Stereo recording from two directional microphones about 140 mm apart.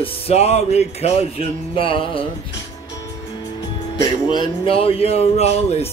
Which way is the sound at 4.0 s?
30° left (ahead or behind).